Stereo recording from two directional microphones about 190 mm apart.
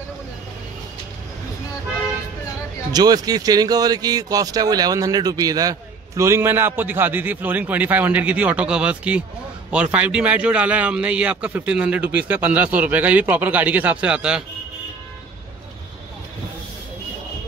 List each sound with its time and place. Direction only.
2.9 s speech: 20° right (ahead or behind); by 14.4 s 5° right (ahead or behind)